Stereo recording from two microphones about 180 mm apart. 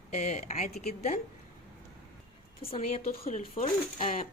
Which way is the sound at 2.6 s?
35° left (ahead or behind).